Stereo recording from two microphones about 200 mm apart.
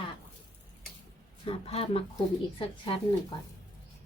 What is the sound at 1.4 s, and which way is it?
A woman's voice, 30° left (ahead or behind).